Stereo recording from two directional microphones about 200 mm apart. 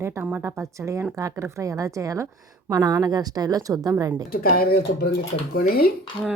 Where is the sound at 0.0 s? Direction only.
10° right (ahead or behind).